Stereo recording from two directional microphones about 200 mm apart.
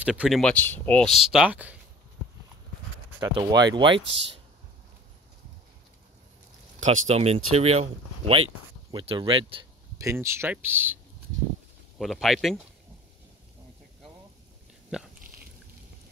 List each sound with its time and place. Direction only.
0.0 s speech: 5° right (ahead or behind)
3.2 s speech: 20° right (ahead or behind)
6.8 s speech: 35° right (ahead or behind); by 11.0 s 10° right (ahead or behind)
12.0 s speech: centre (ahead or behind)
14.9 s speech: 5° right (ahead or behind)